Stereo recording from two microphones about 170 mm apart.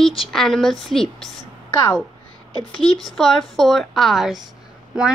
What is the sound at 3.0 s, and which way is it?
Speech, centre (ahead or behind).